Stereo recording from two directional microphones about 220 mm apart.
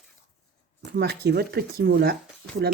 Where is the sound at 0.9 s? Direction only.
45° right (ahead or behind).